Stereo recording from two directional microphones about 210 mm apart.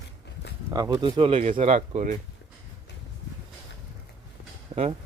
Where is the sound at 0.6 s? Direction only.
15° right (ahead or behind); by 2.2 s 35° right (ahead or behind).